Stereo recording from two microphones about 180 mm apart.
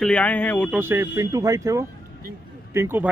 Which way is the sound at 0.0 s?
5° left (ahead or behind).